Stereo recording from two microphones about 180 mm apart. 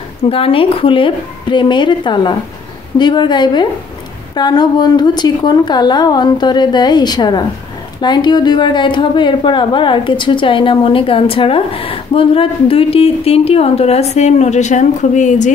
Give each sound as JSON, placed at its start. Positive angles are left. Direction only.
{"t": 0.2, "sound": "a woman's voice", "side_deg": 30}